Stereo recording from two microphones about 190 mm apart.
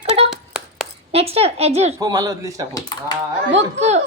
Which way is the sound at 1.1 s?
30° right (ahead or behind).